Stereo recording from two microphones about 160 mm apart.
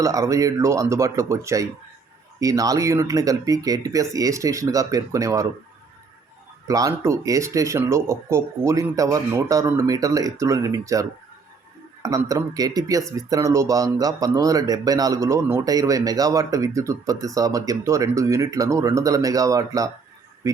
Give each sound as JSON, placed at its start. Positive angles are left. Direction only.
{"t": 0.0, "sound": "speech", "side_deg": -20}
{"t": 6.7, "sound": "speech", "side_deg": -20}
{"t": 12.0, "sound": "speech", "side_deg": -20}